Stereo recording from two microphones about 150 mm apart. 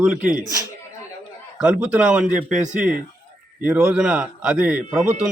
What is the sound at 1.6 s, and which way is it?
A man's voice, 10° right (ahead or behind).